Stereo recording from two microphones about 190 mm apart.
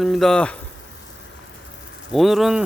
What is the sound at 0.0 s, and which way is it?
Speech, centre (ahead or behind).